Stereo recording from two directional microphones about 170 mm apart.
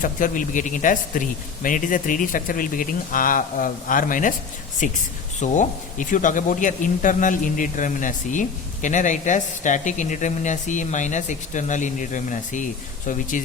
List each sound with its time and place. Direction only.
0.0 s speech: 50° left (ahead or behind)